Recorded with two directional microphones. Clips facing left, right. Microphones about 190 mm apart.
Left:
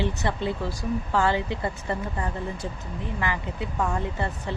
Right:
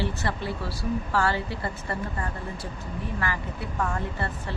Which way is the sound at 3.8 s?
15° left (ahead or behind).